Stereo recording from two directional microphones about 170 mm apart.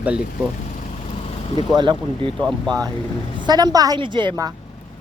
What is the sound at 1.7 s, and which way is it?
A woman's voice, 25° right (ahead or behind).